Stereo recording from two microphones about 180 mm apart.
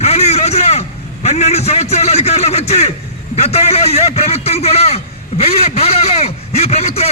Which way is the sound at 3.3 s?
35° left (ahead or behind).